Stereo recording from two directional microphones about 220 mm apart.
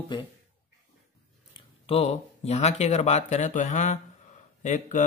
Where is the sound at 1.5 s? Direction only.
25° left (ahead or behind).